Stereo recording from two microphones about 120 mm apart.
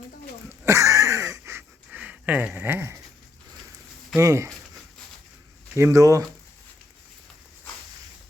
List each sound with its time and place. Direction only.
0.6 s a sound: 25° right (ahead or behind)
4.2 s speech: 25° right (ahead or behind)
5.7 s speech: 25° right (ahead or behind)